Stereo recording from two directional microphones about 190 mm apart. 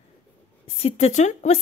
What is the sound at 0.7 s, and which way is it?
Speech, 30° left (ahead or behind).